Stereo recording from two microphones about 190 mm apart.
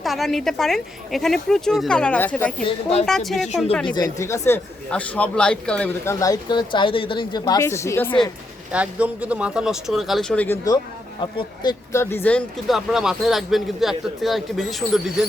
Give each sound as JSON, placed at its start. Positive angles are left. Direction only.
{"t": 0.0, "sound": "speech", "side_deg": 0}
{"t": 2.6, "sound": "speech", "side_deg": 30}
{"t": 3.1, "sound": "speech", "side_deg": 0}
{"t": 3.9, "sound": "speech", "side_deg": 15}
{"t": 8.7, "sound": "speech", "side_deg": -5}
{"t": 11.2, "sound": "speech", "side_deg": 25}